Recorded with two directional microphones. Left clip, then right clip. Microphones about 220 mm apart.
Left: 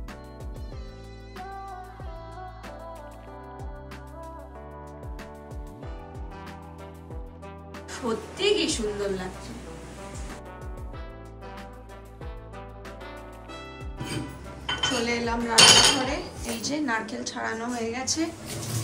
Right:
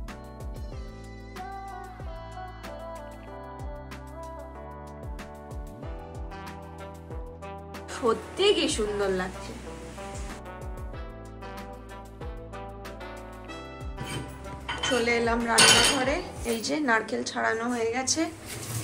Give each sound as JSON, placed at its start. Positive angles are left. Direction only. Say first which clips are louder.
{"t": 1.4, "sound": "music", "louder": "even", "side_deg": 0}
{"t": 7.4, "sound": "music", "louder": "right 1 dB", "side_deg": 0}
{"t": 12.5, "sound": "music", "louder": "right 2 dB", "side_deg": 0}
{"t": 14.8, "sound": "speech", "louder": "right 2 dB", "side_deg": 5}